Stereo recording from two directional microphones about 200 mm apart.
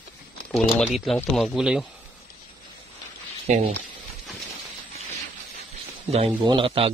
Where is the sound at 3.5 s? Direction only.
40° right (ahead or behind).